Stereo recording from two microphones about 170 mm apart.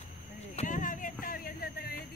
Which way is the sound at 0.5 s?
45° left (ahead or behind).